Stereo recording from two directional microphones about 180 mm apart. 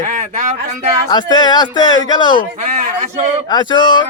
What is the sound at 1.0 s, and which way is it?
Speech, 25° left (ahead or behind).